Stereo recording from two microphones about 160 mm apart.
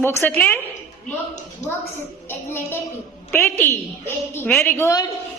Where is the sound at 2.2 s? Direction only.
15° left (ahead or behind).